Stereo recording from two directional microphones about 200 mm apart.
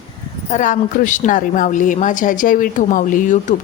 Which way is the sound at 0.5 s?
40° left (ahead or behind).